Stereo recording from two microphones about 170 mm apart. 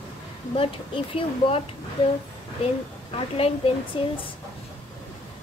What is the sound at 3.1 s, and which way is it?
Speech, 35° left (ahead or behind).